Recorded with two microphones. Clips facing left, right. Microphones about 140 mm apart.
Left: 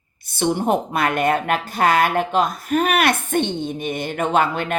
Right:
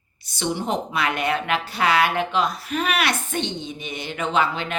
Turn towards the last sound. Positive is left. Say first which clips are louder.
# left 4 dB
turn(degrees=50)  # may be behind; listen again after turning